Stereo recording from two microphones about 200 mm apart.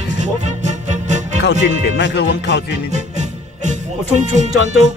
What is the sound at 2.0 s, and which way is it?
Speech, 60° left (ahead or behind).